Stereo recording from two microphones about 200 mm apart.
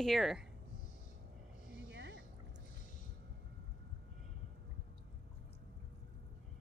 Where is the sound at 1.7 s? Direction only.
60° right (ahead or behind).